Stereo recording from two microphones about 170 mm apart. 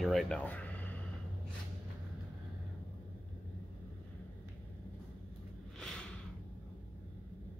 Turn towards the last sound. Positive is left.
turn(degrees=5)  # may be behind; listen again after turning